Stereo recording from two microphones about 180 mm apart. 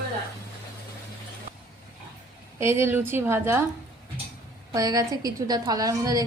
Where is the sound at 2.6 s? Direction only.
15° right (ahead or behind).